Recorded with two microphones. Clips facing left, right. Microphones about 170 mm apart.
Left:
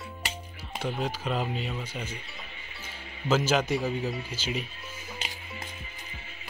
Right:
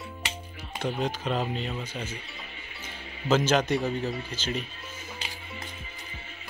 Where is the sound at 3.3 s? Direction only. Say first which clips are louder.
Right 2 dB; 5° left (ahead or behind).